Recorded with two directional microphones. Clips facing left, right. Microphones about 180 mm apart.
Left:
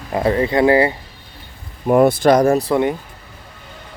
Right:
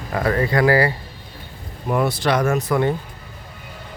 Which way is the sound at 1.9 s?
50° left (ahead or behind).